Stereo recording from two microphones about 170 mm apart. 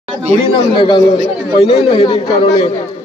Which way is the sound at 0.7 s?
25° left (ahead or behind).